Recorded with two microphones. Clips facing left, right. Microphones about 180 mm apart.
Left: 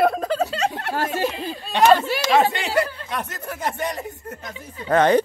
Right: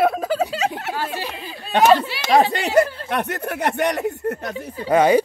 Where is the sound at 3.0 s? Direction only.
65° right (ahead or behind).